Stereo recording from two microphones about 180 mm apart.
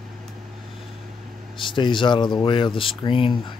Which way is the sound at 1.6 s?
25° left (ahead or behind).